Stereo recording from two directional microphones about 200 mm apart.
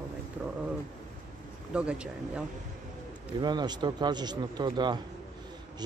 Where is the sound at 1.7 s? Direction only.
5° right (ahead or behind).